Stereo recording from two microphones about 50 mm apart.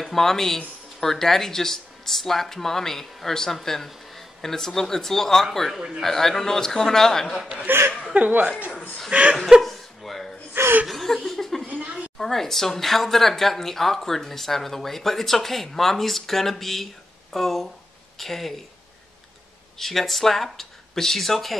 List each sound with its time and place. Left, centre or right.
0.0 s speech: centre
7.6 s speech: right
7.9 s speech: right
9.6 s chuckle: centre
10.6 s chuckle: right
10.9 s chuckle: centre
12.2 s a woman's voice: centre
19.8 s a woman's voice: centre